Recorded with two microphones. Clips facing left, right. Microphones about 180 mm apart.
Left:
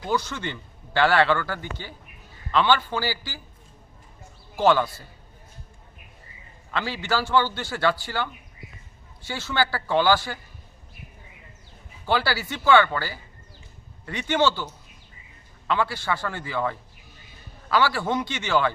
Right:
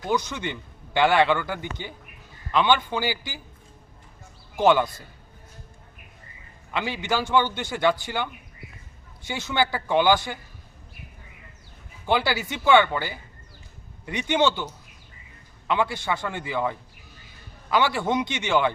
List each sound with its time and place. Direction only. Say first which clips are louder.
0.1 s a man's voice: right 1 dB; 15° right (ahead or behind)
4.5 s a man's voice: right 1 dB; 15° right (ahead or behind)
6.7 s a man's voice: even; 15° right (ahead or behind)
12.0 s a man's voice: right 1 dB; 20° right (ahead or behind)